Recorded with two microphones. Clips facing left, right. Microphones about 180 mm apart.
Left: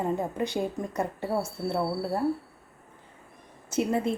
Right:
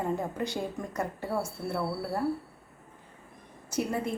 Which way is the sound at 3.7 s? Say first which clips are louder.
Left 4 dB; 25° left (ahead or behind).